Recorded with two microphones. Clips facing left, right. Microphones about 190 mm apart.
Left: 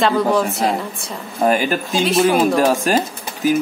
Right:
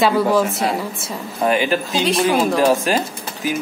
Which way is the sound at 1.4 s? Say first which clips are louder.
Left 1 dB; 45° left (ahead or behind).